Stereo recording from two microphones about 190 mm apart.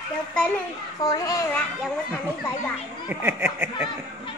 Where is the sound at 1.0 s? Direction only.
20° left (ahead or behind).